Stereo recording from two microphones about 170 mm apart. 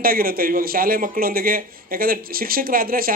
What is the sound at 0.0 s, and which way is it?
A man's voice, 60° right (ahead or behind).